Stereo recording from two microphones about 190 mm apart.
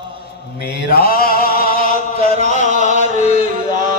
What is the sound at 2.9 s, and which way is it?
Chant, 40° right (ahead or behind).